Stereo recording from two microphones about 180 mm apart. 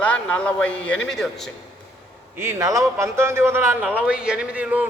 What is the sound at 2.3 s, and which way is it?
A man's voice, 15° right (ahead or behind).